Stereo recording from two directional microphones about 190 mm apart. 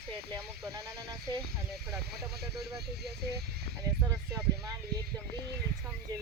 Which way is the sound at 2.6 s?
55° right (ahead or behind).